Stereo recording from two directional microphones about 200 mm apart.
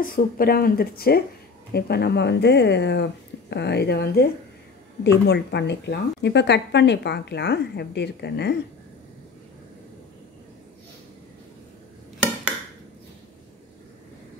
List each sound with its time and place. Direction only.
0.0 s speech: 45° left (ahead or behind)